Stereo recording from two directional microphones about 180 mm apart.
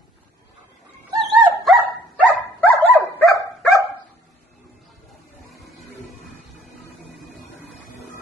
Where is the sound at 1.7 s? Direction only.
Centre (ahead or behind).